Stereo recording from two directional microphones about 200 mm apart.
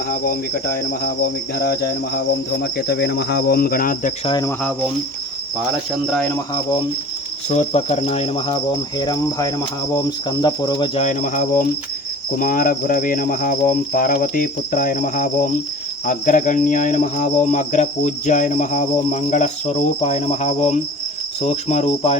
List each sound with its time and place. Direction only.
0.1 s cricket: 45° left (ahead or behind)
4.3 s cricket: 20° left (ahead or behind)
6.1 s cricket: 5° left (ahead or behind)
6.3 s cricket: 20° left (ahead or behind)
7.5 s cricket: 35° left (ahead or behind)
11.0 s cricket: 40° left (ahead or behind)